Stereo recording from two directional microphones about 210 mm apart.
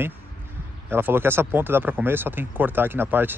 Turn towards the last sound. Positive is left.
turn(degrees=-10)  # may be behind; listen again after turning